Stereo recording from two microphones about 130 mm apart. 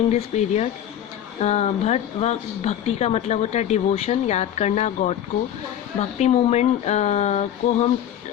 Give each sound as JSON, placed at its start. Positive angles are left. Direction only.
{"t": 0.1, "sound": "speech", "side_deg": 60}